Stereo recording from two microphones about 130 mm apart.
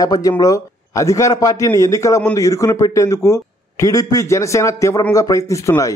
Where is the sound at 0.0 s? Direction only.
30° left (ahead or behind).